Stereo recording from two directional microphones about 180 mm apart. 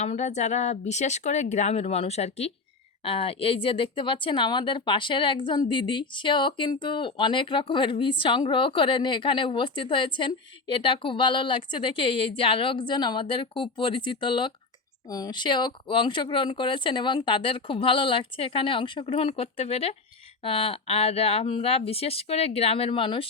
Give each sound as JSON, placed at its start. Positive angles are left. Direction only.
{"t": 0.0, "sound": "speech", "side_deg": 40}